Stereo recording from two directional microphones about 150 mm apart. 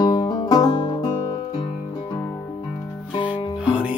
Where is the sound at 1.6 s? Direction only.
25° left (ahead or behind).